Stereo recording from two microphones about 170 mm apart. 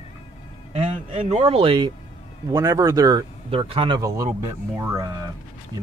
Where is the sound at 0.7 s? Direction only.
40° right (ahead or behind).